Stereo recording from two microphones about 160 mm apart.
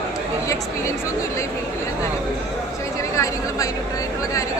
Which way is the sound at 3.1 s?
20° left (ahead or behind).